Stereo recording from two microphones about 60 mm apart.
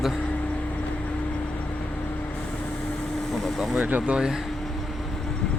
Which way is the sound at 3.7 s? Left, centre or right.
Right.